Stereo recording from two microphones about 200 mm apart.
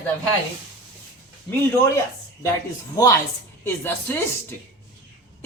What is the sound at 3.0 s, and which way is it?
A man's voice, 15° left (ahead or behind).